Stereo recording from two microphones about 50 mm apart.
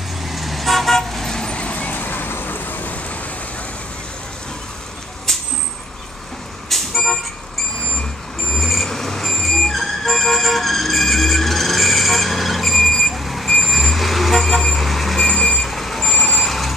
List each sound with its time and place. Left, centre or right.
0.2 s vehicle: centre; by 1.9 s left
1.9 s vehicle: left
6.7 s vehicle: centre
8.5 s music: centre